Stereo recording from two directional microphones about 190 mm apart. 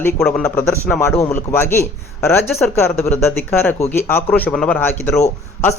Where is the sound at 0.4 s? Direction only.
10° left (ahead or behind).